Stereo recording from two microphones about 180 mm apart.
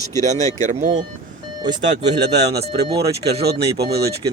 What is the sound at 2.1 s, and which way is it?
Speech, 70° right (ahead or behind).